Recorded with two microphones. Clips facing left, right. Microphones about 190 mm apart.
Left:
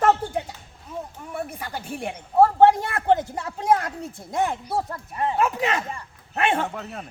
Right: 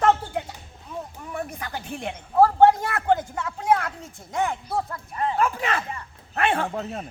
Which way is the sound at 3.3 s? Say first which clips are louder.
Left 1 dB; 35° left (ahead or behind).